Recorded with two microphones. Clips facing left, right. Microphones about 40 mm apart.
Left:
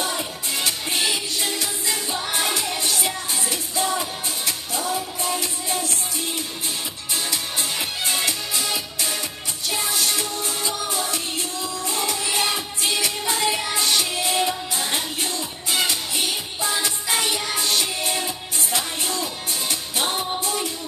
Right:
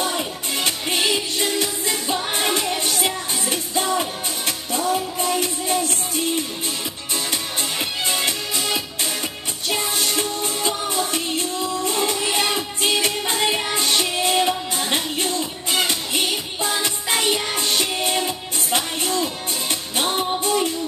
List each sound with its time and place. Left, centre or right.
0.0 s music: right
8.0 s music: right